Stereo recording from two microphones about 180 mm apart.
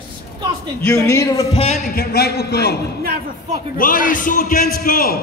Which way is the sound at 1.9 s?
60° left (ahead or behind).